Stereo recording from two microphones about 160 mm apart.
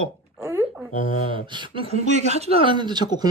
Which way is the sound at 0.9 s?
55° left (ahead or behind).